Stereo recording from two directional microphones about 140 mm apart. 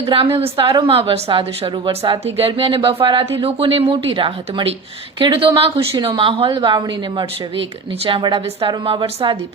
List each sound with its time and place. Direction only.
0.0 s a woman's voice: 40° right (ahead or behind)